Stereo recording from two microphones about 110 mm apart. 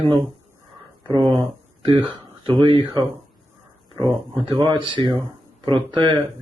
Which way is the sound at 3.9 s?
55° right (ahead or behind).